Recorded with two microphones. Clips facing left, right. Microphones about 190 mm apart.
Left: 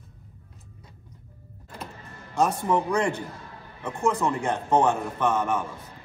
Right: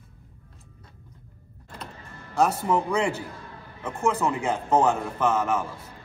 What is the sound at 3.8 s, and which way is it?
Speech, 15° left (ahead or behind).